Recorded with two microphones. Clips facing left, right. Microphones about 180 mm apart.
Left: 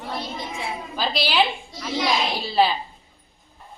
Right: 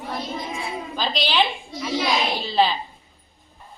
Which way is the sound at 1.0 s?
10° left (ahead or behind).